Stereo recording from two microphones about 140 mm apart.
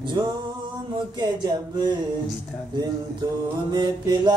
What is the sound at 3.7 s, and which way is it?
Music, 30° right (ahead or behind).